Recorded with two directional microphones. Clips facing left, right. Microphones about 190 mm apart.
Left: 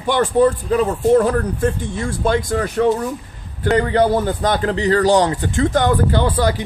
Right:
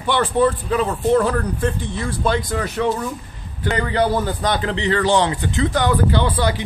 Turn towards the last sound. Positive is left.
turn(degrees=45)  # may be behind; listen again after turning